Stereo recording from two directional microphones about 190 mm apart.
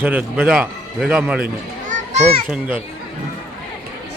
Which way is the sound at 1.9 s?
40° right (ahead or behind).